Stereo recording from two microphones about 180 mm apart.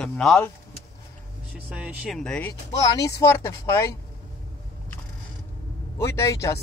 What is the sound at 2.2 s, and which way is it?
Speech, 10° left (ahead or behind).